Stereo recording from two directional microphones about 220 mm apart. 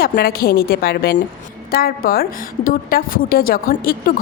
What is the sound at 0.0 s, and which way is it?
A woman's voice, 45° left (ahead or behind).